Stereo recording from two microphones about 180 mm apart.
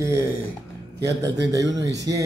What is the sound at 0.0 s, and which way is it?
A man's voice, 15° right (ahead or behind).